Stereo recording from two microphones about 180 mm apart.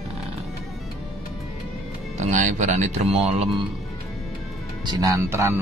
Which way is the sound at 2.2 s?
45° right (ahead or behind).